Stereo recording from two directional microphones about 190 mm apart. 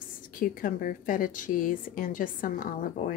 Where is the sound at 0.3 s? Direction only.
45° left (ahead or behind).